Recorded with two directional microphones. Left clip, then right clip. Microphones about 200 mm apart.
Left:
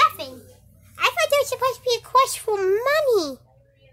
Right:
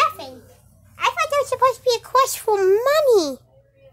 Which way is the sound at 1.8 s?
15° right (ahead or behind).